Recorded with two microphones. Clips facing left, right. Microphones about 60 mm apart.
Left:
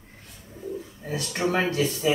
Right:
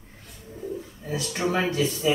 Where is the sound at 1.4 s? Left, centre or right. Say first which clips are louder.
Left 1 dB; centre.